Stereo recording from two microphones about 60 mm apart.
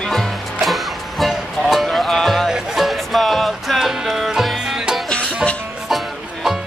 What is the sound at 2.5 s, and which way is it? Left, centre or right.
Music, centre.